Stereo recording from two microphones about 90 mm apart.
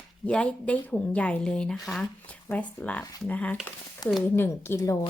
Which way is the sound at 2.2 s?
15° left (ahead or behind).